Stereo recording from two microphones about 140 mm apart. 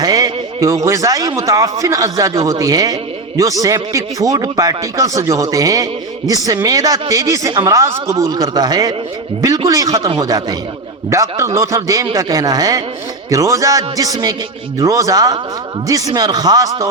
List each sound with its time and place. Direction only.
0.0 s a man's voice: 25° right (ahead or behind)